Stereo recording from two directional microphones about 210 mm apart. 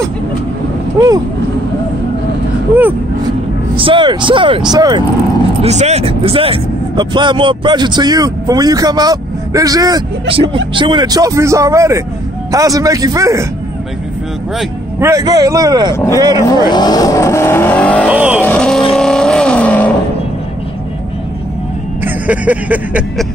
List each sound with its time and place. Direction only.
0.9 s speech: 20° right (ahead or behind)
3.7 s speech: 25° right (ahead or behind)
5.6 s speech: 30° right (ahead or behind); by 13.5 s 15° right (ahead or behind)
15.0 s speech: 15° right (ahead or behind)
16.4 s speech: 20° left (ahead or behind)
18.0 s speech: 5° right (ahead or behind)
18.4 s vehicle: 5° left (ahead or behind)
22.0 s music: 5° right (ahead or behind)